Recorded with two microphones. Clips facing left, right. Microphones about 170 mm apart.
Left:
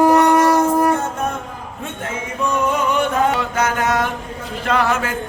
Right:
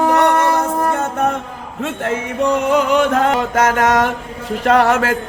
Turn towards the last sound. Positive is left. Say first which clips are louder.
# right 6 dB
turn(degrees=-80)